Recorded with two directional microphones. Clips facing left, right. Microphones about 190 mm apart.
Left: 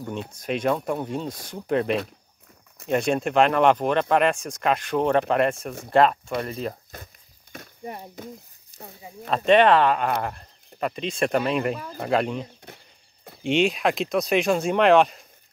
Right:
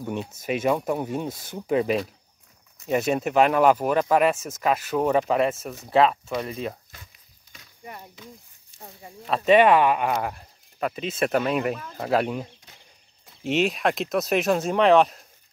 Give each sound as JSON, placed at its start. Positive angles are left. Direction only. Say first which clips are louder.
{"t": 0.0, "sound": "speech", "louder": "right 2 dB", "side_deg": -5}
{"t": 7.5, "sound": "speech", "louder": "left 6 dB", "side_deg": 45}
{"t": 8.7, "sound": "a sound", "louder": "left 2 dB", "side_deg": 40}
{"t": 9.3, "sound": "speech", "louder": "even", "side_deg": -5}